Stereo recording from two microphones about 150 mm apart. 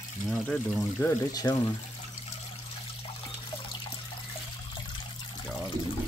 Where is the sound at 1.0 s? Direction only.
25° left (ahead or behind).